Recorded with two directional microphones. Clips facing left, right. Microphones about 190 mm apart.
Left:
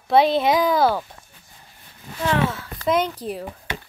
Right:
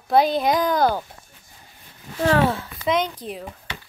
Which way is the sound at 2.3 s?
40° right (ahead or behind).